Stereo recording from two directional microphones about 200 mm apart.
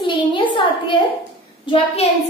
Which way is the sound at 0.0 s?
25° left (ahead or behind).